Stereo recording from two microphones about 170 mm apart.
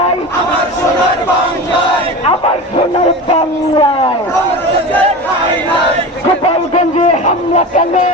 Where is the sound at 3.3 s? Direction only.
35° left (ahead or behind).